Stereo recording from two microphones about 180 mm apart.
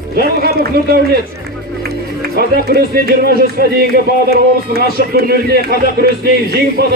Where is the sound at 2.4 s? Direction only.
60° right (ahead or behind).